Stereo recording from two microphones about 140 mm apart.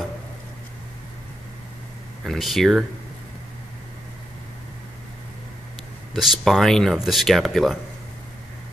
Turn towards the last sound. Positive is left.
turn(degrees=0)  # may be behind; listen again after turning